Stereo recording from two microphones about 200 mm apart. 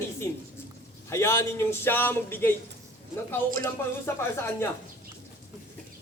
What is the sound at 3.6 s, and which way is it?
A man's voice, 15° left (ahead or behind).